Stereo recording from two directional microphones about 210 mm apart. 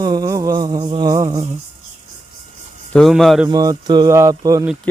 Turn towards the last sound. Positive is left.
turn(degrees=-15)  # may be behind; listen again after turning